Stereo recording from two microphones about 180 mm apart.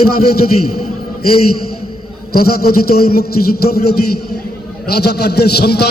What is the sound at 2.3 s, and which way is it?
A man's voice, 60° left (ahead or behind).